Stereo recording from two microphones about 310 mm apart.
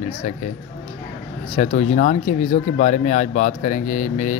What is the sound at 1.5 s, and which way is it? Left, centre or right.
Speech, left.